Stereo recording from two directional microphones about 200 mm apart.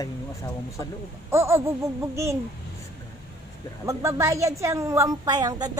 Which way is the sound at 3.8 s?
15° right (ahead or behind).